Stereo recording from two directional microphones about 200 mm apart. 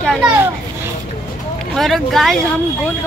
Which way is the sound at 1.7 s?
Centre (ahead or behind).